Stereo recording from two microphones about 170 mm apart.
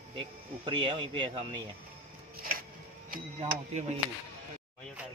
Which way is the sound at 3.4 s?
40° right (ahead or behind).